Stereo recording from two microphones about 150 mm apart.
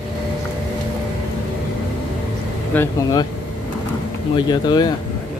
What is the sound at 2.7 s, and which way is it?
Speech, 15° left (ahead or behind).